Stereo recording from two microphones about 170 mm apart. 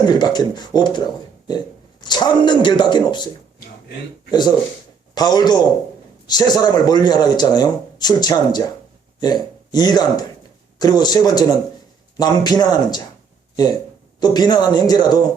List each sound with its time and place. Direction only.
0.0 s speech: 25° left (ahead or behind)
4.3 s speech: 25° left (ahead or behind)
14.2 s speech: 25° left (ahead or behind)